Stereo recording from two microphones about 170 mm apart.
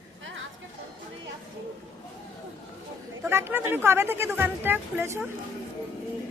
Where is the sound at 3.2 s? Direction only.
15° right (ahead or behind).